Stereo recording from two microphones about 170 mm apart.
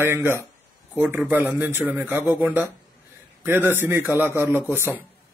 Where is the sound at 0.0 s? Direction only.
15° right (ahead or behind).